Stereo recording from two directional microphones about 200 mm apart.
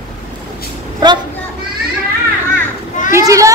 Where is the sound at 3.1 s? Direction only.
15° right (ahead or behind).